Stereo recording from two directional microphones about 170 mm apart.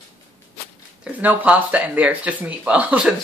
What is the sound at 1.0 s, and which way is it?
Speech, 10° right (ahead or behind).